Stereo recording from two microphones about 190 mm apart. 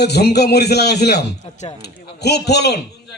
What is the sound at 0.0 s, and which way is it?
A man's voice, 60° left (ahead or behind).